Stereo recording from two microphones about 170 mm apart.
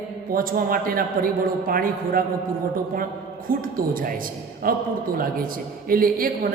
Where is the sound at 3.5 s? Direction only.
55° right (ahead or behind).